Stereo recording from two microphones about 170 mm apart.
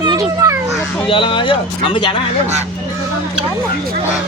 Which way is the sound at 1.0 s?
30° left (ahead or behind).